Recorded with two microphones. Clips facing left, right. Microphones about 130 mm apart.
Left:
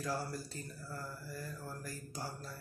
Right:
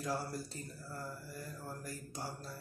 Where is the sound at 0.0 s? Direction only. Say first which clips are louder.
Even; 20° right (ahead or behind).